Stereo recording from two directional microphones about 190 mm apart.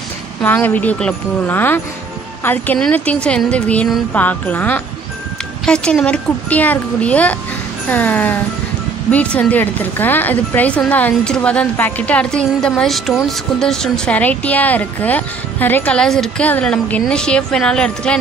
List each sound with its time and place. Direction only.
0.4 s speech: 10° left (ahead or behind)